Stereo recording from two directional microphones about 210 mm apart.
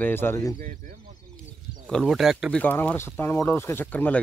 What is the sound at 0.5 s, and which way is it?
Speech, 40° right (ahead or behind).